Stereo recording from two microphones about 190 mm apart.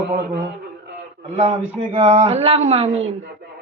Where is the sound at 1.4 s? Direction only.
30° right (ahead or behind).